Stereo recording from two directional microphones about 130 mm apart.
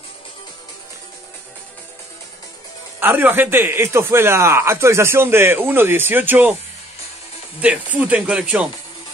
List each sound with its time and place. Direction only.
3.0 s a man's voice: 15° right (ahead or behind)
7.9 s a man's voice: 10° right (ahead or behind)